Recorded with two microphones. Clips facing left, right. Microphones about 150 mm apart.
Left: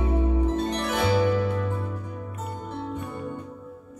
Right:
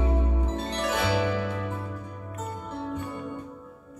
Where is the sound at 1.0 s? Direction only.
45° left (ahead or behind).